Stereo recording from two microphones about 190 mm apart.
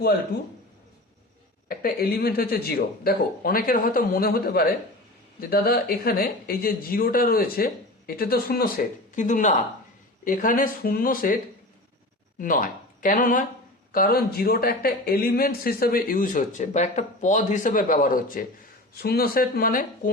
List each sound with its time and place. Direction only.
1.6 s speech: 50° left (ahead or behind)
9.1 s speech: 40° left (ahead or behind)
12.4 s speech: 45° left (ahead or behind)